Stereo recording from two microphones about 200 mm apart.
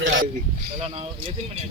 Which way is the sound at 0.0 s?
70° right (ahead or behind).